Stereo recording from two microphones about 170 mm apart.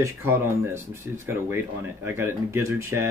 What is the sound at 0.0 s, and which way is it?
Speech, 15° right (ahead or behind).